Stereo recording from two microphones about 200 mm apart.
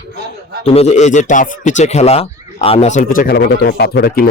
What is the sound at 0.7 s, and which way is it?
Speech, 30° left (ahead or behind).